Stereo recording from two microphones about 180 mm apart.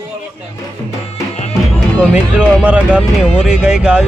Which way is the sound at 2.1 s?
5° right (ahead or behind).